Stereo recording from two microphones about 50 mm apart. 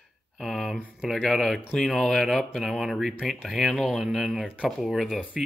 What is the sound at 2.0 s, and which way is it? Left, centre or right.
Speech, centre.